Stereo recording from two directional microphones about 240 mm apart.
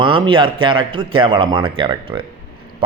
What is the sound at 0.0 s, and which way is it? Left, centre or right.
A man's voice, right.